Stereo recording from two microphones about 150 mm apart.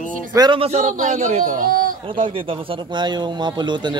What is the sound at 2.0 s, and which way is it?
Speech, 35° right (ahead or behind).